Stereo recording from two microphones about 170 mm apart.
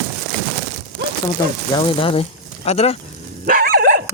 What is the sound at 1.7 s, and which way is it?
Speech, 30° left (ahead or behind).